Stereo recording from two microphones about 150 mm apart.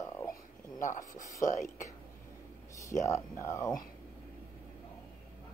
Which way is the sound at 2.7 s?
20° left (ahead or behind).